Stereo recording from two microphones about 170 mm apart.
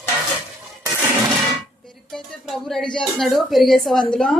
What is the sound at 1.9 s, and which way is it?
A woman's voice, 5° left (ahead or behind).